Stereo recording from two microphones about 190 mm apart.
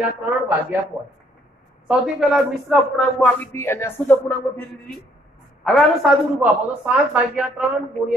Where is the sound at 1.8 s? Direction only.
5° right (ahead or behind).